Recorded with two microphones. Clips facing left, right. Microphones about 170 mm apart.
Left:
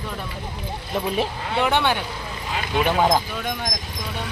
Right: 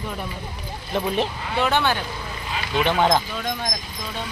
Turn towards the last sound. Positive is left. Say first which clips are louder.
# even
turn(degrees=5)  # may be behind; listen again after turning